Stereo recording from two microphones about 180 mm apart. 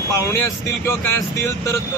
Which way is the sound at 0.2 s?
15° left (ahead or behind).